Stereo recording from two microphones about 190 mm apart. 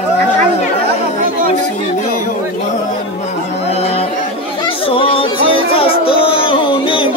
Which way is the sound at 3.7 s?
35° left (ahead or behind).